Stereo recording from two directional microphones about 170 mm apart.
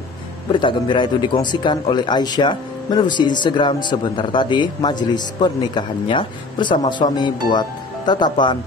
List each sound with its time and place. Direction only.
0.5 s a man's voice: 30° left (ahead or behind)